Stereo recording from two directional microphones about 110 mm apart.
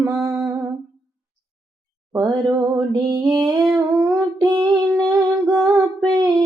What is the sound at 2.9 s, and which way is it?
Music, 35° right (ahead or behind).